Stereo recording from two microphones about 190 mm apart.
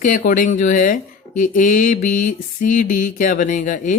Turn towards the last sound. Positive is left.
turn(degrees=40)  # may be behind; listen again after turning